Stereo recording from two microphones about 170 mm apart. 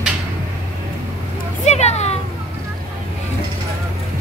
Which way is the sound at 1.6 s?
40° left (ahead or behind).